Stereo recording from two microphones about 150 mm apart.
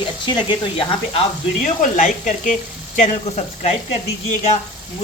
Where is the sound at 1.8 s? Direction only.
55° left (ahead or behind).